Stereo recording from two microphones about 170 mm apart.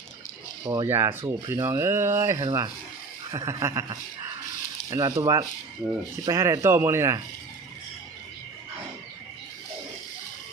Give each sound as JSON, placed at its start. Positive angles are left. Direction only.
{"t": 0.6, "sound": "speech", "side_deg": -20}